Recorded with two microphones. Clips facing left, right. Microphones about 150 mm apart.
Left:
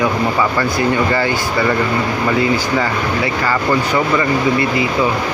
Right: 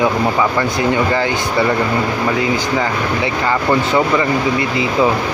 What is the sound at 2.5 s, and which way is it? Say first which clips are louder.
Speech: even; 15° right (ahead or behind).